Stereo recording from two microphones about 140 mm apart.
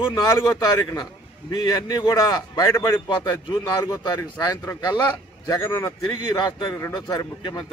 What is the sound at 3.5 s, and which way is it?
Speech, 30° left (ahead or behind).